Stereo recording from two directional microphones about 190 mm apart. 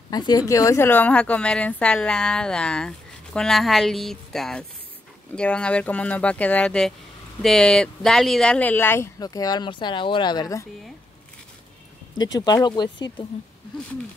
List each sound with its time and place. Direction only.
0.1 s a woman's voice: 20° left (ahead or behind)
12.3 s speech: 20° left (ahead or behind)